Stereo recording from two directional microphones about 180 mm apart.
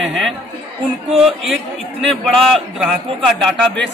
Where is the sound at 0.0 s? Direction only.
Centre (ahead or behind).